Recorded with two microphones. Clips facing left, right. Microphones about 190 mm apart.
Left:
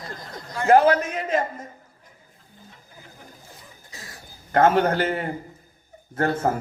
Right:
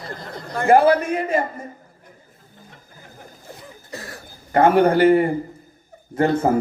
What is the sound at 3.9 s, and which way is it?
Cough, 65° right (ahead or behind).